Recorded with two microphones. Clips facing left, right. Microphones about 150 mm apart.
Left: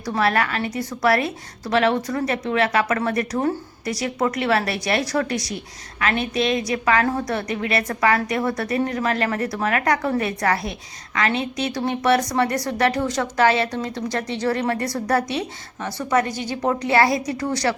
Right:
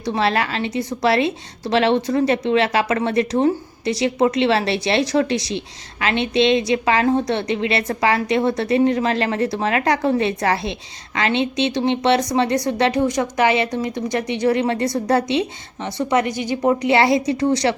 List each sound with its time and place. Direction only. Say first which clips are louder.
0.0 s a woman's voice: right 1 dB; 25° right (ahead or behind)